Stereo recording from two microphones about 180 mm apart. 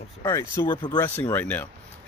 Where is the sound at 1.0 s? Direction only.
10° left (ahead or behind).